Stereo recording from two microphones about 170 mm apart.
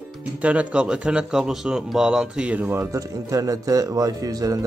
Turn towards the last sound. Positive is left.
turn(degrees=-20)  # may be behind; listen again after turning